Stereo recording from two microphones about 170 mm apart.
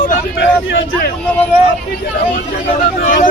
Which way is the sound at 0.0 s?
65° left (ahead or behind).